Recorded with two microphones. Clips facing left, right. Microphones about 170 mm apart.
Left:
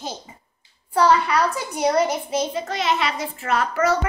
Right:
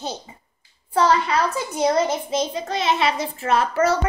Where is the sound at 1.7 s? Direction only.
10° left (ahead or behind).